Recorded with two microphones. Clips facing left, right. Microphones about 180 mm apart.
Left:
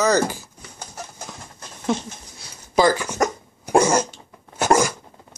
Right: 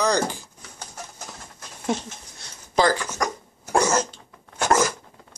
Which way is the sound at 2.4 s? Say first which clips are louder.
Left 3 dB; 10° left (ahead or behind).